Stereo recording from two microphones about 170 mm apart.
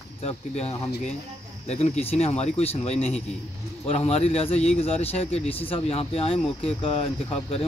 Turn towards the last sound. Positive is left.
turn(degrees=35)  # may be behind; listen again after turning